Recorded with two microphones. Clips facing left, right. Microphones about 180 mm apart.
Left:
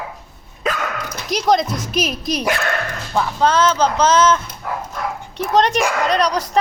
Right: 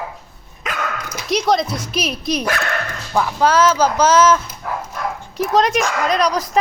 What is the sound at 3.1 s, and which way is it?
Speech, 5° right (ahead or behind).